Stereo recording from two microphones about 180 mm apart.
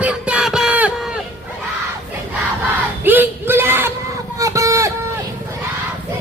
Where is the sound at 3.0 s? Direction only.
10° right (ahead or behind).